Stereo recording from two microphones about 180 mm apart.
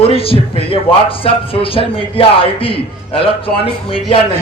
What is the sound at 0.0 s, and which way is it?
A man's voice, 30° left (ahead or behind).